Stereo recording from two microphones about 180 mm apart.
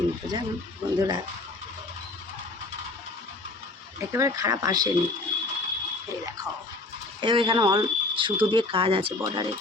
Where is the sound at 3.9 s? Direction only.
15° right (ahead or behind).